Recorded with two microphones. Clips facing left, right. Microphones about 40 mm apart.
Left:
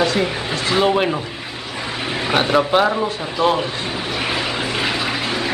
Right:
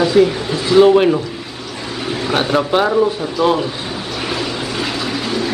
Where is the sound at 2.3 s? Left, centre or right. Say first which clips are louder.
Even; centre.